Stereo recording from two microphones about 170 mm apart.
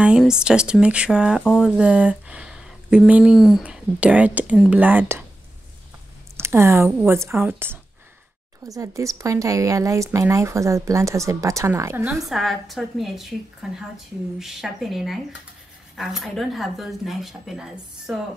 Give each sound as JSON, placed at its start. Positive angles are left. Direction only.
{"t": 0.0, "sound": "a woman's voice", "side_deg": -5}
{"t": 6.3, "sound": "speech", "side_deg": -15}
{"t": 12.3, "sound": "a woman's voice", "side_deg": 0}